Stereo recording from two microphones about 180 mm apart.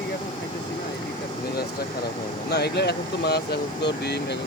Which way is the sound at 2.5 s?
65° left (ahead or behind).